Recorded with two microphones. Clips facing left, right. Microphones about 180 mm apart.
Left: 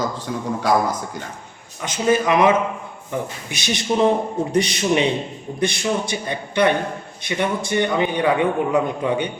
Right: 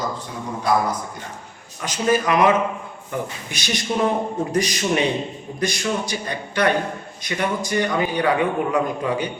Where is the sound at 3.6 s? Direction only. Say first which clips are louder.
Left 3 dB; 25° left (ahead or behind).